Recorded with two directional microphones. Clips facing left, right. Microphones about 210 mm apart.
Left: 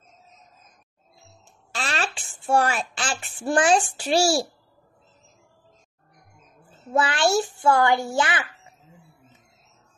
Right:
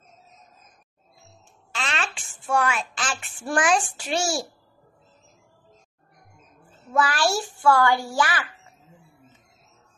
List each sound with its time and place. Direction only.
1.7 s a woman's voice: 35° left (ahead or behind)
6.9 s a child's voice: 25° left (ahead or behind)